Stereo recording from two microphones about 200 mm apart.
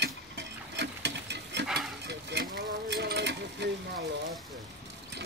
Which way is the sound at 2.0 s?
55° right (ahead or behind).